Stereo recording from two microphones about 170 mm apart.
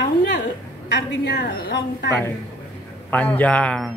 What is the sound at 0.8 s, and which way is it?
A woman's voice, 90° left.